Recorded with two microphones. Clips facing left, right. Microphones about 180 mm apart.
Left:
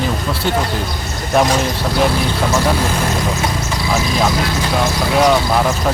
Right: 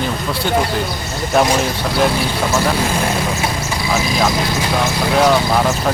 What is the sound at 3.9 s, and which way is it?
Speech, centre (ahead or behind).